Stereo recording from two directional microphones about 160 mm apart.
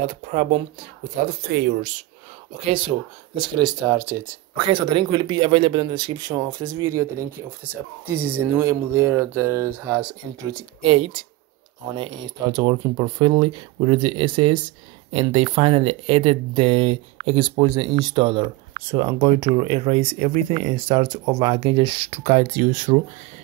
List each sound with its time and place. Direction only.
0.0 s speech: 50° right (ahead or behind)
3.3 s speech: 25° right (ahead or behind)
4.6 s speech: 30° right (ahead or behind)
10.9 s speech: 35° right (ahead or behind); by 22.9 s 55° right (ahead or behind)